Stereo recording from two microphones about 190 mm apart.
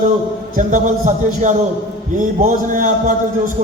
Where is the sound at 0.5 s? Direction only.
40° right (ahead or behind).